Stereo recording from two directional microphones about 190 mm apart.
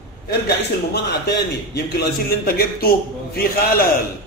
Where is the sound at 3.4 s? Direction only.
50° left (ahead or behind).